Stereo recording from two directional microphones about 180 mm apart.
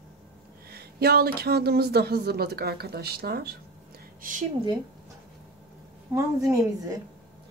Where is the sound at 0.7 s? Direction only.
60° right (ahead or behind).